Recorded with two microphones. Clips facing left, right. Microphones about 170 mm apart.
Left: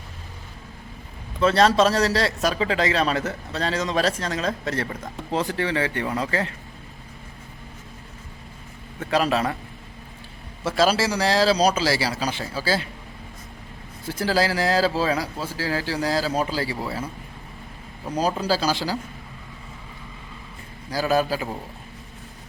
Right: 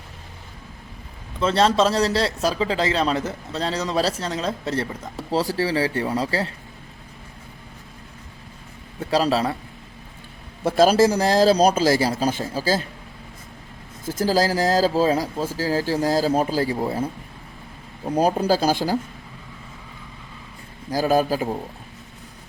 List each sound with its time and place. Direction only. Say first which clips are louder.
1.4 s a man's voice: left 1 dB; 25° right (ahead or behind)
3.7 s speech: left 1 dB; centre (ahead or behind)
4.2 s a man's voice: even; 30° right (ahead or behind)
9.0 s speech: right 2 dB; 35° right (ahead or behind)
10.7 s speech: right 5 dB; 50° right (ahead or behind)
14.0 s speech: right 2 dB; 45° right (ahead or behind)
18.1 s speech: right 4 dB; 55° right (ahead or behind)
20.9 s speech: right 2 dB; 45° right (ahead or behind)